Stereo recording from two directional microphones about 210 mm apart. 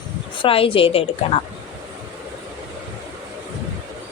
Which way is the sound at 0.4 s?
25° left (ahead or behind).